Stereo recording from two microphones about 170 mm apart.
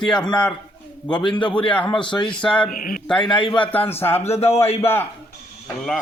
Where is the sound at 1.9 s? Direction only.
25° left (ahead or behind).